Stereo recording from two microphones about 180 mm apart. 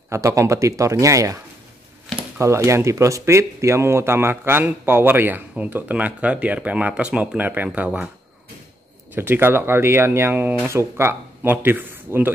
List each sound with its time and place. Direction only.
0.1 s a man's voice: 15° right (ahead or behind)
9.1 s a man's voice: 10° right (ahead or behind)